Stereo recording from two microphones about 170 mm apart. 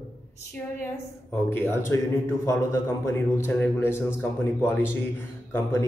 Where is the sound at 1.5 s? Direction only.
15° left (ahead or behind).